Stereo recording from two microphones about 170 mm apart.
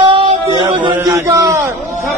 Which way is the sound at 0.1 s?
30° right (ahead or behind).